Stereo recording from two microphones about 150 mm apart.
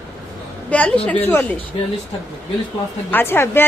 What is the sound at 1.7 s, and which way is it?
Speech, 40° left (ahead or behind).